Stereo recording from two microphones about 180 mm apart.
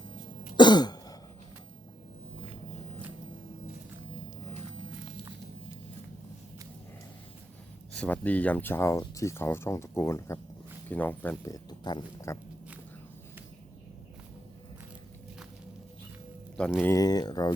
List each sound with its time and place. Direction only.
0.5 s throat clearing: 25° left (ahead or behind)
7.9 s speech: 10° left (ahead or behind)
16.6 s speech: 5° left (ahead or behind)
16.9 s speech: 20° left (ahead or behind)